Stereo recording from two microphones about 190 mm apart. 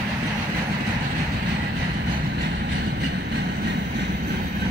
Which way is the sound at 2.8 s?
65° right (ahead or behind).